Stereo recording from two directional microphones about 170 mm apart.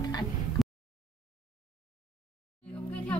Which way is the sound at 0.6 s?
Centre (ahead or behind).